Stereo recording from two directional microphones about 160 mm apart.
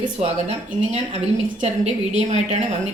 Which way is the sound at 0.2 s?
40° right (ahead or behind).